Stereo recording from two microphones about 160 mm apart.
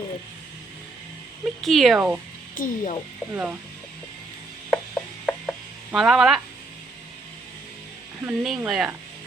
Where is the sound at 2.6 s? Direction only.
45° left (ahead or behind).